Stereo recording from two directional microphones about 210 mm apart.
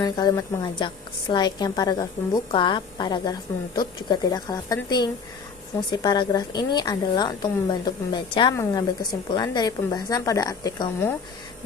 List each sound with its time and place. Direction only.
0.0 s a woman's voice: 20° left (ahead or behind)